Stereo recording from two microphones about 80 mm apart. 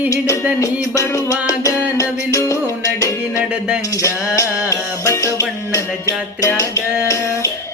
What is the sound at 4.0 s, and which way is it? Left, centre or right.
Music, left.